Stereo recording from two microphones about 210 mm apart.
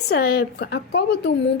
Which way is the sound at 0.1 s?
50° left (ahead or behind).